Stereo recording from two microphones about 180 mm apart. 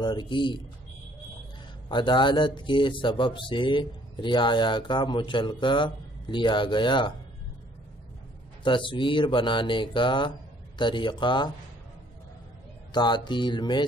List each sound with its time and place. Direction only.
0.0 s speech: 25° left (ahead or behind)
1.9 s speech: 25° left (ahead or behind)
8.6 s speech: 25° left (ahead or behind)
12.9 s speech: 25° left (ahead or behind)